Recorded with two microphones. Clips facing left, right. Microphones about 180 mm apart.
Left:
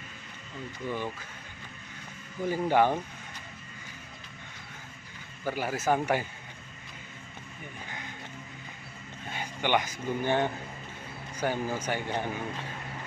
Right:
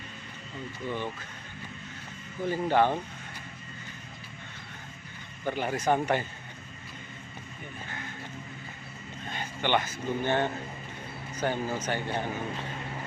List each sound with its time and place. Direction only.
0.8 s speech: 10° left (ahead or behind)
2.4 s speech: 10° left (ahead or behind)
5.4 s speech: 5° left (ahead or behind)
9.3 s speech: 10° left (ahead or behind)